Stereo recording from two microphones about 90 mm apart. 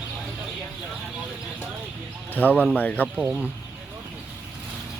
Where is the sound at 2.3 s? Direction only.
20° left (ahead or behind).